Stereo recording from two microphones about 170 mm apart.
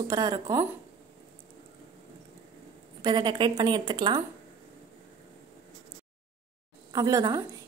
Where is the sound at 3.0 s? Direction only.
25° right (ahead or behind).